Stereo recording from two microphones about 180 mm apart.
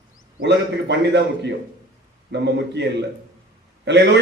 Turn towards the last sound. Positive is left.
turn(degrees=-70)  # may be behind; listen again after turning